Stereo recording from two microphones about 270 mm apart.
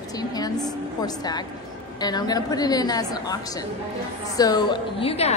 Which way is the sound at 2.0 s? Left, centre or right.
Centre.